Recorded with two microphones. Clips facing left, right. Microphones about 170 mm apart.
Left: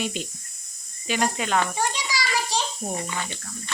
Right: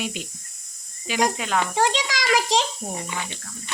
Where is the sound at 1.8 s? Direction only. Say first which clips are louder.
Right 5 dB; 90° right.